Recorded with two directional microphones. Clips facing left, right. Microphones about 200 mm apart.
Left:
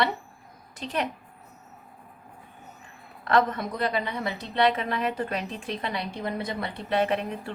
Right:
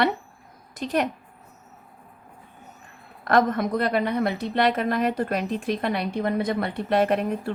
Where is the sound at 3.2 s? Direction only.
50° right (ahead or behind).